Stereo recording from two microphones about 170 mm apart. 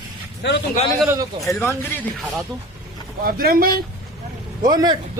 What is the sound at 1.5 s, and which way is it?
Speech, 15° left (ahead or behind).